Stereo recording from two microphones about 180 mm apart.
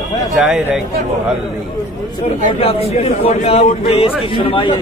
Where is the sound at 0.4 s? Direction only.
5° right (ahead or behind).